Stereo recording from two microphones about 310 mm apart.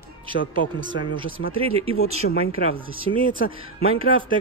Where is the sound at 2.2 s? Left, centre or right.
Left.